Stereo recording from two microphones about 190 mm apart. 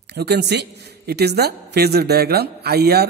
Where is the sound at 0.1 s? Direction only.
60° right (ahead or behind).